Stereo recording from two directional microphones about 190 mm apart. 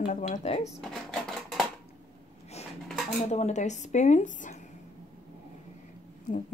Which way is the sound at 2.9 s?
Centre (ahead or behind).